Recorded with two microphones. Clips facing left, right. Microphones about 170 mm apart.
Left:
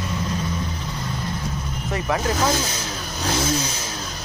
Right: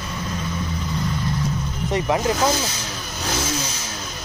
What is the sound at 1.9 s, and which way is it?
Speech, 20° right (ahead or behind).